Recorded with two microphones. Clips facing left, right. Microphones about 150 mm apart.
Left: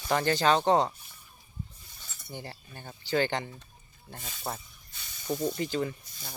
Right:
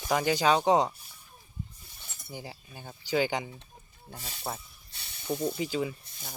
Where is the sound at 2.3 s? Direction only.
5° right (ahead or behind).